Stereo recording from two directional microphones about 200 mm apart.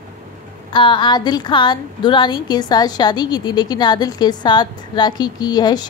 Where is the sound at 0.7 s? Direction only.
25° left (ahead or behind).